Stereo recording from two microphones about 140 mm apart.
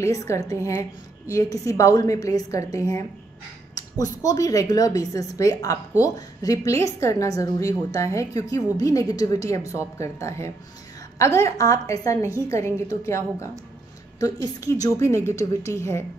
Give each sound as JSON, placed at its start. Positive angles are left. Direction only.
{"t": 0.0, "sound": "a woman's voice", "side_deg": 20}